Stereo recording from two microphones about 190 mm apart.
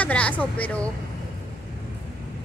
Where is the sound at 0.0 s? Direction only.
5° left (ahead or behind).